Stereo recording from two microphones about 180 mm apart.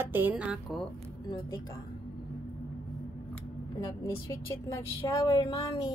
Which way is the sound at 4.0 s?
15° left (ahead or behind).